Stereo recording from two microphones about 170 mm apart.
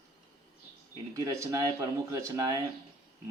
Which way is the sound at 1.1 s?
20° right (ahead or behind).